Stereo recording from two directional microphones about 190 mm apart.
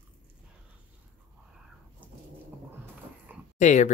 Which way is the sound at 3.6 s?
40° left (ahead or behind).